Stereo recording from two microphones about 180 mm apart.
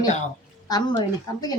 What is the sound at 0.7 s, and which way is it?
Speech, 25° left (ahead or behind).